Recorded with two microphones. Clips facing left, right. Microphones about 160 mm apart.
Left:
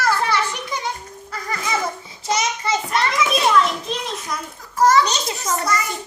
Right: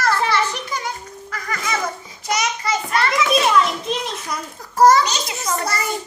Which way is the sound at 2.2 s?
25° left (ahead or behind).